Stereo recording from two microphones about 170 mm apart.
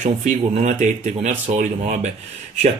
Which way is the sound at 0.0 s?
45° right (ahead or behind).